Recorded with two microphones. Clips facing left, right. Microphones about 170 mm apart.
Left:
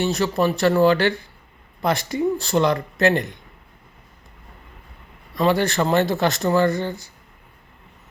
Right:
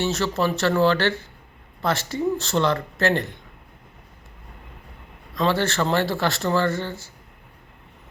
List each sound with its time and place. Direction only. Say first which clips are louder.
0.0 s speech: left 3 dB; 15° left (ahead or behind)
5.4 s speech: left 3 dB; 15° left (ahead or behind)